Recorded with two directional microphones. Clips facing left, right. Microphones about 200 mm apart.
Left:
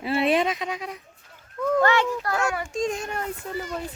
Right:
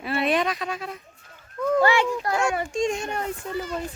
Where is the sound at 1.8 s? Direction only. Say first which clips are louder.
Right 1 dB; 10° right (ahead or behind).